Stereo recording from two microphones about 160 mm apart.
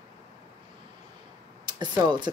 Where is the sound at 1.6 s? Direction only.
25° right (ahead or behind).